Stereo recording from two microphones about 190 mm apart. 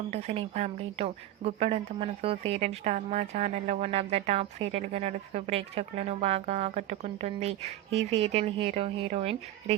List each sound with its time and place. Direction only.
0.1 s a woman's voice: 35° right (ahead or behind)